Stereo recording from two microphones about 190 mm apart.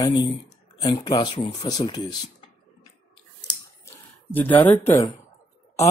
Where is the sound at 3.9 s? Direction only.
10° left (ahead or behind).